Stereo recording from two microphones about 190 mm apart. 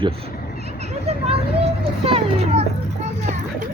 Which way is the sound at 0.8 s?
30° right (ahead or behind).